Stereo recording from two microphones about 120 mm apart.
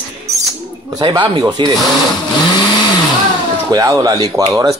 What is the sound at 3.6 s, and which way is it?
Speech, 30° right (ahead or behind).